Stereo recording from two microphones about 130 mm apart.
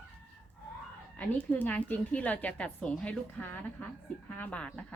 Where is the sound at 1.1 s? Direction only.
10° left (ahead or behind).